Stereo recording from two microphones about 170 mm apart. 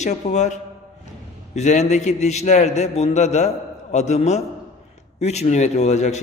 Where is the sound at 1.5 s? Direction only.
45° left (ahead or behind).